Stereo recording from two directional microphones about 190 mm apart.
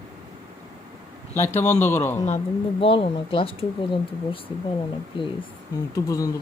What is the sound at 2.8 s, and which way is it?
Speech, 30° left (ahead or behind).